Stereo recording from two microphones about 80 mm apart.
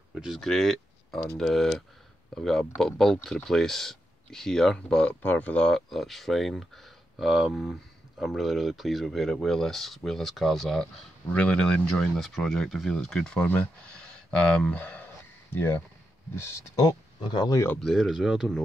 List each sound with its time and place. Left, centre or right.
0.1 s speech: centre
5.7 s speech: centre
11.2 s speech: centre; by 16.8 s left
17.2 s speech: left
17.7 s speech: centre